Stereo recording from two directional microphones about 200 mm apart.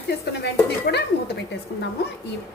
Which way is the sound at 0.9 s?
55° left (ahead or behind).